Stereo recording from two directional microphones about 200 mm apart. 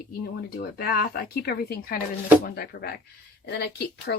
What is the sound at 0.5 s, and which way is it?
Speech, 50° left (ahead or behind).